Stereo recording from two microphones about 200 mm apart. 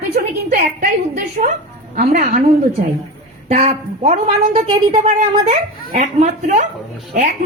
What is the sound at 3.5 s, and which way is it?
A woman's voice, 30° right (ahead or behind).